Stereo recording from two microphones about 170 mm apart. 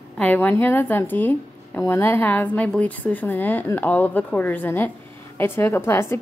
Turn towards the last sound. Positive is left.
turn(degrees=15)  # may be behind; listen again after turning